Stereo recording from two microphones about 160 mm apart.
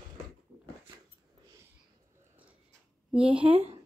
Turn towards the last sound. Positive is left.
turn(degrees=-40)  # may be behind; listen again after turning